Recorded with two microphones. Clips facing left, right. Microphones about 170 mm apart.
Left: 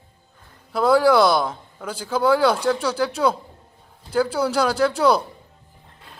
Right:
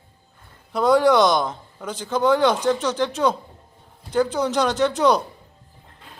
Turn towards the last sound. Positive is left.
turn(degrees=5)  # may be behind; listen again after turning